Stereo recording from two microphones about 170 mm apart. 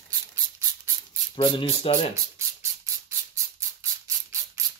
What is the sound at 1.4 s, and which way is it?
Speech, 35° left (ahead or behind).